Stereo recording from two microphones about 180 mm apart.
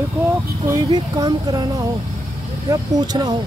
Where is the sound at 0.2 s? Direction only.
15° right (ahead or behind).